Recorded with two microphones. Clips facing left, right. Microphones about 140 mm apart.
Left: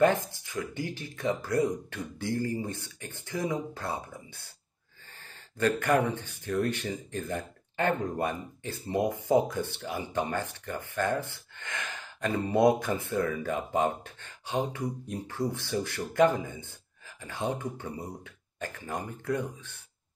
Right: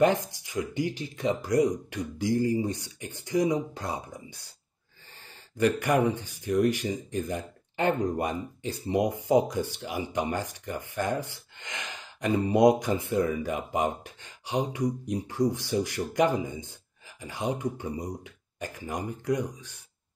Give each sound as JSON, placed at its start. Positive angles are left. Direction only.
{"t": 0.0, "sound": "speech", "side_deg": -15}
{"t": 5.6, "sound": "speech", "side_deg": -15}